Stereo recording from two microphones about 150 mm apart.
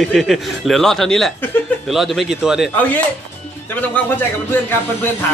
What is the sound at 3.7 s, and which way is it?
Speech, 10° left (ahead or behind).